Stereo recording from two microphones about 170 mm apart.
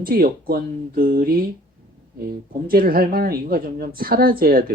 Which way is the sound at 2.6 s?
60° right (ahead or behind).